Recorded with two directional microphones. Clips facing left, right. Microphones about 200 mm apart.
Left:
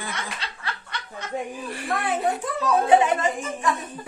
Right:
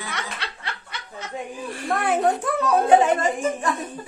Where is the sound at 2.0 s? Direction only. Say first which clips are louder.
Right 5 dB; 60° right (ahead or behind).